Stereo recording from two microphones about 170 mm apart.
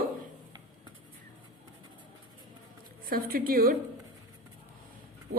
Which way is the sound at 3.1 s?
60° right (ahead or behind).